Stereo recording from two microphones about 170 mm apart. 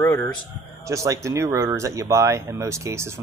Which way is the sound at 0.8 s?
20° right (ahead or behind).